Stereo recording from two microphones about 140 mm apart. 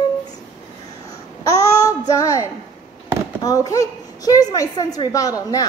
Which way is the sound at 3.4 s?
25° left (ahead or behind).